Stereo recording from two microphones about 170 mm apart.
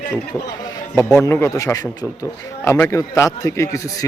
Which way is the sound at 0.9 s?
15° left (ahead or behind).